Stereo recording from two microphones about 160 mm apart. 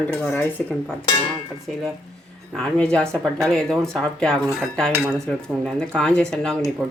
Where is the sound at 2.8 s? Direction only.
5° left (ahead or behind).